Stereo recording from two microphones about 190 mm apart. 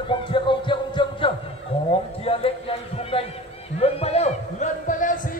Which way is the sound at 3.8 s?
30° left (ahead or behind).